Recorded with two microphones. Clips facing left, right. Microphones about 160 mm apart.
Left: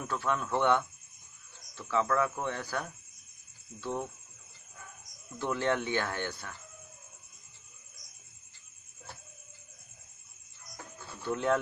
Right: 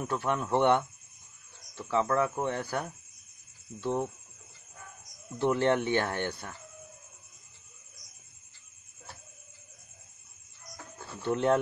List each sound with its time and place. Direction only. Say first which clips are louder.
0.0 s speech: right 2 dB; 20° right (ahead or behind)
5.4 s speech: right 5 dB; 25° right (ahead or behind)
11.2 s speech: right 3 dB; 25° right (ahead or behind)